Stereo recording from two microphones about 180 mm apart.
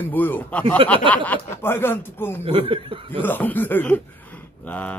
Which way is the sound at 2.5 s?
30° right (ahead or behind).